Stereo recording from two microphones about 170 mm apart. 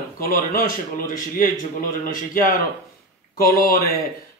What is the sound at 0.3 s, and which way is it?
Speech, 55° left (ahead or behind).